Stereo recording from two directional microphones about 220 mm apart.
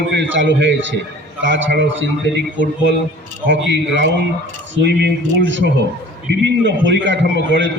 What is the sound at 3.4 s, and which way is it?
A man's voice, 55° right (ahead or behind).